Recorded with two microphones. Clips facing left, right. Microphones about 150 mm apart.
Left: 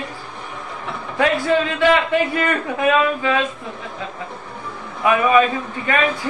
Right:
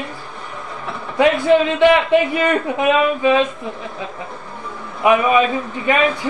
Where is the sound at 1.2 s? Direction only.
20° right (ahead or behind).